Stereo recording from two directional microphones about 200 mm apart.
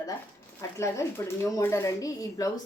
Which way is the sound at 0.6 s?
15° left (ahead or behind).